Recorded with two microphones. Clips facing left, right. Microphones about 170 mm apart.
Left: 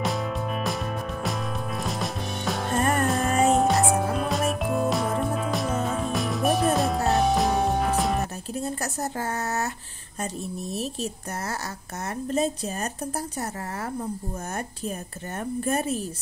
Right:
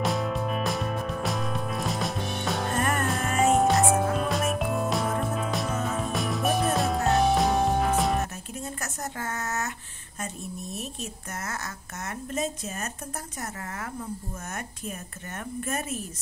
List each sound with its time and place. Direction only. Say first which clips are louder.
0.0 s music: right 1 dB; centre (ahead or behind)
9.2 s a sound: left 3 dB; 35° left (ahead or behind)
10.7 s speech: left 6 dB; 35° left (ahead or behind)
15.6 s speech: left 6 dB; 35° left (ahead or behind)